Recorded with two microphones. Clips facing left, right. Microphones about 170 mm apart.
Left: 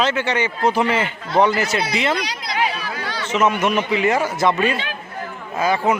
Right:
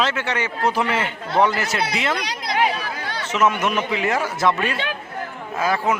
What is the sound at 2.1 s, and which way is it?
Chatter, 55° right (ahead or behind).